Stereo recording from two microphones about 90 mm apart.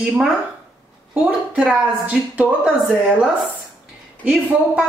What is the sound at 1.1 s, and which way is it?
A woman's voice, 15° right (ahead or behind).